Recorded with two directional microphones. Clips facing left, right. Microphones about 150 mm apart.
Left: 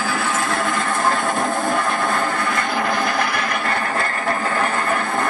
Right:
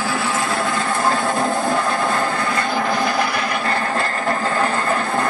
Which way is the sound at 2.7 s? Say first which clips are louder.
Right 2 dB; centre (ahead or behind).